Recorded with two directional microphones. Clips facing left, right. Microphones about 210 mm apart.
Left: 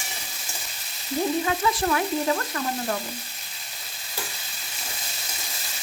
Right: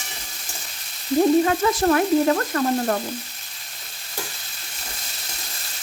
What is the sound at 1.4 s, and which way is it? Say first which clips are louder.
Frying: right 5 dB; 50° right (ahead or behind).